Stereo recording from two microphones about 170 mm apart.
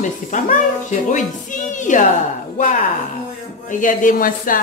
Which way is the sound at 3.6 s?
50° left (ahead or behind).